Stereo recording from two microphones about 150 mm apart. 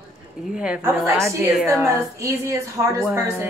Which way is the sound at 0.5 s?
5° right (ahead or behind).